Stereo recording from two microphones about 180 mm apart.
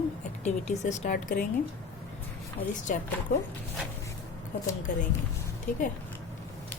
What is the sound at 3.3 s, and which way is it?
Speech, 45° left (ahead or behind).